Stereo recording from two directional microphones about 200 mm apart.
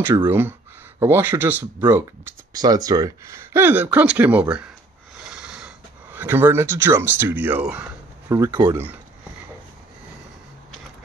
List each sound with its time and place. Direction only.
0.1 s speech: 10° right (ahead or behind)
5.3 s snort: 5° right (ahead or behind)
6.1 s speech: 10° right (ahead or behind)